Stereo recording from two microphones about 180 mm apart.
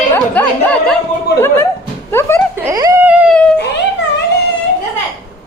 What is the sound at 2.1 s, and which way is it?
Speech, 15° left (ahead or behind).